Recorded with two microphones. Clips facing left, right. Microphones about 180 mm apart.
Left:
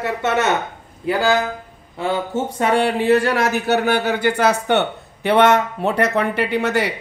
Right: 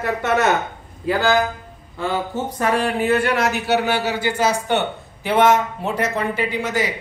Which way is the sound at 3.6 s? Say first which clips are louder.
Left 2 dB; 50° left (ahead or behind).